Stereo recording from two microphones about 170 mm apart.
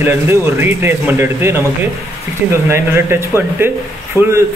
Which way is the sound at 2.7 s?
15° right (ahead or behind).